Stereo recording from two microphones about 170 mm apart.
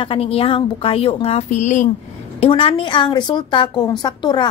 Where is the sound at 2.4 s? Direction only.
35° left (ahead or behind).